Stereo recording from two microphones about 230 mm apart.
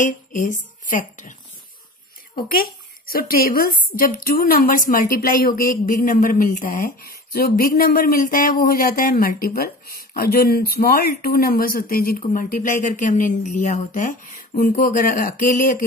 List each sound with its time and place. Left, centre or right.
0.0 s speech: left
2.3 s a woman's voice: left